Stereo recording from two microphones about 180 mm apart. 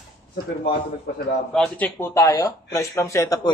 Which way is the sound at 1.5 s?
5° left (ahead or behind).